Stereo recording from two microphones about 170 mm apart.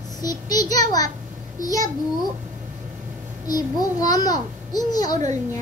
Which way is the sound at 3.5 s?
20° left (ahead or behind).